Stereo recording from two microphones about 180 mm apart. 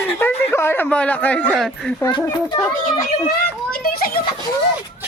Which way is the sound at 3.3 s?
55° left (ahead or behind).